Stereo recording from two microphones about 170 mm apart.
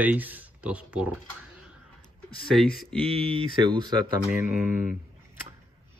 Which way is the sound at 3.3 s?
30° right (ahead or behind).